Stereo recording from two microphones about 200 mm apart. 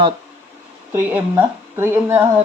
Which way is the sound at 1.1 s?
10° right (ahead or behind).